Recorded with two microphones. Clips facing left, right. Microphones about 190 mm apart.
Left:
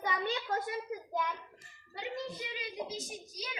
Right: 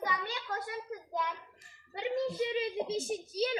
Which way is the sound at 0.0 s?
25° left (ahead or behind).